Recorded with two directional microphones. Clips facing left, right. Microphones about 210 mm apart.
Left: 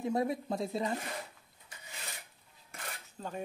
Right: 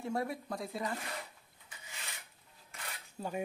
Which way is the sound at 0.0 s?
20° left (ahead or behind).